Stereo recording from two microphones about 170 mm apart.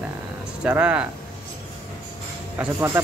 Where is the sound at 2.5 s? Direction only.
15° right (ahead or behind).